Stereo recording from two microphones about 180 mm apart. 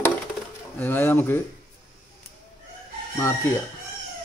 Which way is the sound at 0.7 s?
10° left (ahead or behind).